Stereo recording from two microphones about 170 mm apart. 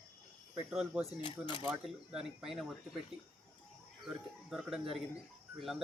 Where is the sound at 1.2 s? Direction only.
30° left (ahead or behind).